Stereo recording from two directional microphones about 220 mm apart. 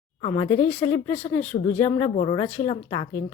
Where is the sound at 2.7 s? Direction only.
20° left (ahead or behind).